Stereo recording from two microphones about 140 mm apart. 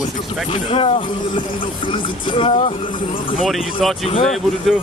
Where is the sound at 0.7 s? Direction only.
40° left (ahead or behind).